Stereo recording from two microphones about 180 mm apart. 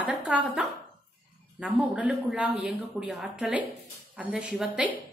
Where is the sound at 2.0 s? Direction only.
5° right (ahead or behind).